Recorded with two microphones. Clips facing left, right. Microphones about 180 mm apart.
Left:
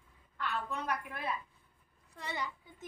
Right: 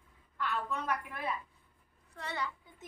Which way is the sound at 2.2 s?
15° left (ahead or behind).